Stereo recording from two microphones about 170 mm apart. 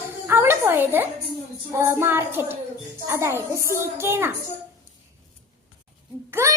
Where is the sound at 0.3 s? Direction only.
15° right (ahead or behind).